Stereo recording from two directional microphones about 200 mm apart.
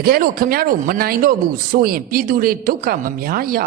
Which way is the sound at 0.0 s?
50° right (ahead or behind).